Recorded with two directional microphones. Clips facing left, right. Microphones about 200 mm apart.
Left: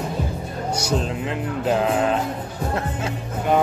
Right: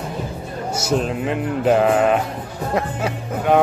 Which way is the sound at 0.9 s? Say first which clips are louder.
Right 6 dB; 5° right (ahead or behind).